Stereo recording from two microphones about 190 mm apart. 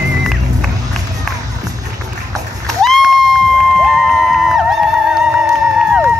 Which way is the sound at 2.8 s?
Centre (ahead or behind).